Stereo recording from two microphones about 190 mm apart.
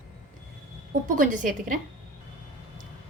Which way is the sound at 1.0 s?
45° right (ahead or behind).